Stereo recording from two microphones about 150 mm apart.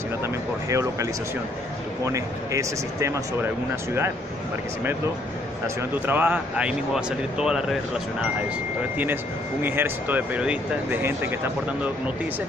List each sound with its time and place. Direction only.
0.2 s speech: 20° right (ahead or behind)
2.0 s speech: 20° right (ahead or behind)
5.8 s speech: 10° right (ahead or behind)
8.9 s speech: 15° right (ahead or behind)